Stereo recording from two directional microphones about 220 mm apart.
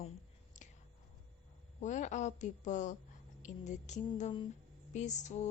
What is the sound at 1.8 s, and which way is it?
Speech, 35° left (ahead or behind).